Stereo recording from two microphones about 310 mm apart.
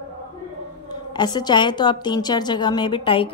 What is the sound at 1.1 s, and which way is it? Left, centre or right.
A woman's voice, centre.